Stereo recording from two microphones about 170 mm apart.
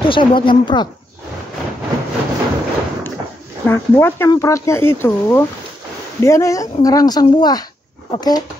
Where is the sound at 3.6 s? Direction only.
15° left (ahead or behind).